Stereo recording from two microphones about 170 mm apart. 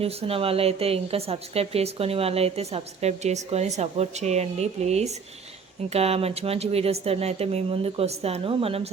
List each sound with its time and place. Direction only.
0.0 s a woman's voice: 35° right (ahead or behind)